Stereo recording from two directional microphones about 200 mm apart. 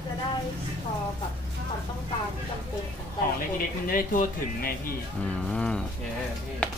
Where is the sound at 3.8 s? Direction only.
45° left (ahead or behind).